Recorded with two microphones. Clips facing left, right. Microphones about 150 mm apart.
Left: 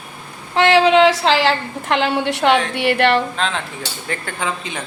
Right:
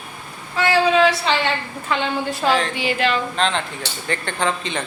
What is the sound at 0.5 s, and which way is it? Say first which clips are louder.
A woman's voice: left 4 dB; 85° left.